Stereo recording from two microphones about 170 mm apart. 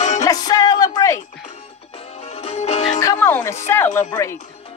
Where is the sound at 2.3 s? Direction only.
40° left (ahead or behind).